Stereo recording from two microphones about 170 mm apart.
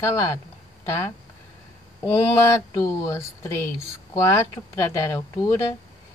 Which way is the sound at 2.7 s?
20° left (ahead or behind).